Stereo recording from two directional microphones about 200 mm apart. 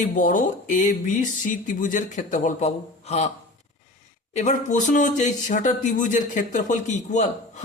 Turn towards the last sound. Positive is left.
turn(degrees=35)  # may be behind; listen again after turning